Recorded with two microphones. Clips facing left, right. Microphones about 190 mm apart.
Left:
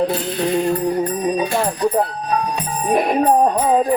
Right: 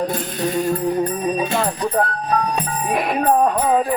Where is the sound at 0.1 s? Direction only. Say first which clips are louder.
Left 3 dB; 45° right (ahead or behind).